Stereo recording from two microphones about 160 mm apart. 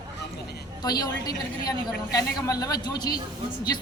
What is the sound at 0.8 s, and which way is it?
Speech, 25° left (ahead or behind).